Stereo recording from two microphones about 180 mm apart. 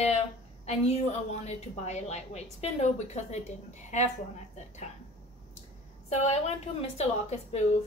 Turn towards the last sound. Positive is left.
turn(degrees=35)  # may be behind; listen again after turning